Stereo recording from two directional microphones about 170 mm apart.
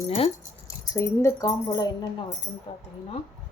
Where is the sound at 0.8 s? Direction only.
20° left (ahead or behind).